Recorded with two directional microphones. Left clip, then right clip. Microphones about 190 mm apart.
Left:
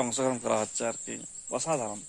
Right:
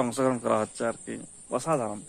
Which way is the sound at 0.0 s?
15° left (ahead or behind).